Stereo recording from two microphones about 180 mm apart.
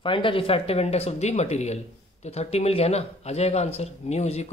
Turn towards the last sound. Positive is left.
turn(degrees=35)  # may be behind; listen again after turning